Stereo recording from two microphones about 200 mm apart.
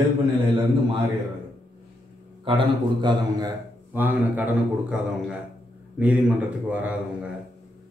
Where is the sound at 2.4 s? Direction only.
25° right (ahead or behind); by 4.9 s 5° right (ahead or behind).